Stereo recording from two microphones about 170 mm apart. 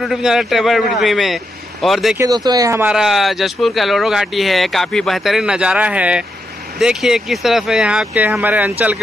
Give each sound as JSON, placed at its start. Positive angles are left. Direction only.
{"t": 0.0, "sound": "speech", "side_deg": 0}
{"t": 2.1, "sound": "speech", "side_deg": -20}
{"t": 2.9, "sound": "speech", "side_deg": -5}